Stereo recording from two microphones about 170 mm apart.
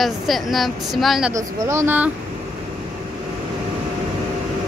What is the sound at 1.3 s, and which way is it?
Speech, 15° right (ahead or behind).